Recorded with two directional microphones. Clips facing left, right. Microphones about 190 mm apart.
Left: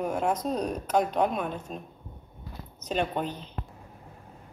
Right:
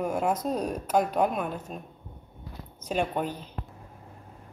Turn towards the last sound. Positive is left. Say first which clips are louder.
# right 1 dB
turn(degrees=-10)  # may be behind; listen again after turning